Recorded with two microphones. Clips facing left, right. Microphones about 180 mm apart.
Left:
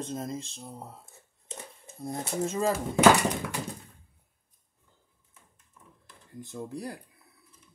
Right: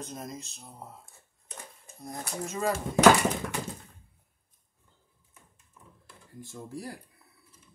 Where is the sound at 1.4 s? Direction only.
25° left (ahead or behind).